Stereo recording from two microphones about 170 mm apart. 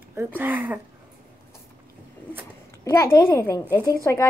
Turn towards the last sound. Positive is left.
turn(degrees=15)  # may be behind; listen again after turning